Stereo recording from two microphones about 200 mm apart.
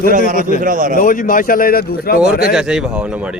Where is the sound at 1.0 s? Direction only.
40° left (ahead or behind).